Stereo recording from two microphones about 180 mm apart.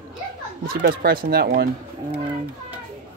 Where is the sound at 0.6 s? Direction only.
55° right (ahead or behind).